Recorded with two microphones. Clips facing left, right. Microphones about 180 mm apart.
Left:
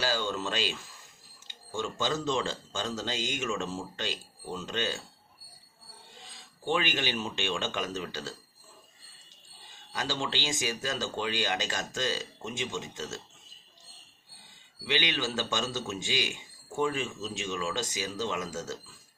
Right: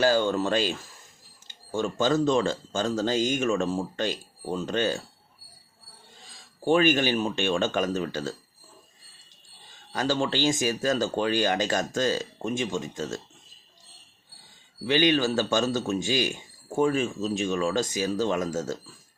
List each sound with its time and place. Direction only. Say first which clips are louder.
0.0 s a man's voice: right 9 dB; 50° right (ahead or behind)
6.7 s a man's voice: right 9 dB; 45° right (ahead or behind)
9.9 s a man's voice: right 7 dB; 45° right (ahead or behind)
14.8 s a man's voice: right 9 dB; 45° right (ahead or behind)